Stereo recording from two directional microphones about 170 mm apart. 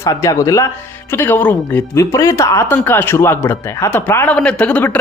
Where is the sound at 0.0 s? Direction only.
20° left (ahead or behind).